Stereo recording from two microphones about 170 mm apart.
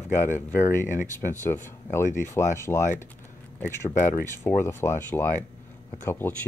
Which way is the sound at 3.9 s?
50° left (ahead or behind).